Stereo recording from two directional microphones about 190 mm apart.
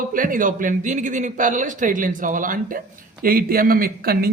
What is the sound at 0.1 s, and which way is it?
A man's voice, 45° right (ahead or behind).